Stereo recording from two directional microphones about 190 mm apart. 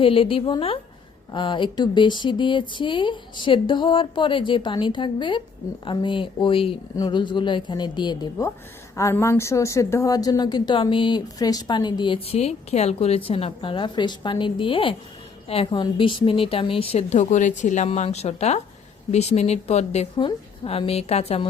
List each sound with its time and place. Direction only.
0.0 s speech: 30° left (ahead or behind)